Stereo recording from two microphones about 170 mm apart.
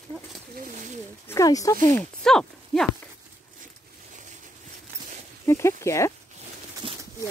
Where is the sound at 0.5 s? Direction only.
55° right (ahead or behind).